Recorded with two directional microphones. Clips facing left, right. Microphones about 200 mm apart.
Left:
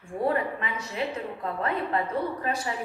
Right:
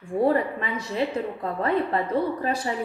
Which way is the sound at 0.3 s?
35° right (ahead or behind).